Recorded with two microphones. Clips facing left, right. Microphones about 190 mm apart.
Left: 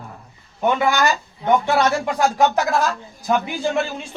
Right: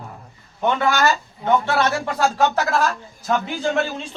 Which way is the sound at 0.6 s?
10° left (ahead or behind).